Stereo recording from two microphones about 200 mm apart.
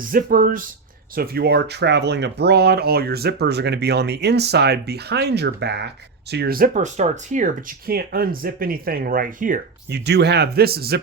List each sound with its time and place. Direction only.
0.1 s speech: 45° right (ahead or behind)
10.1 s speech: 55° right (ahead or behind)